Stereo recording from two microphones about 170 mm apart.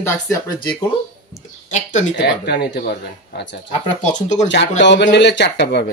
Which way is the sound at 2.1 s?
80° left.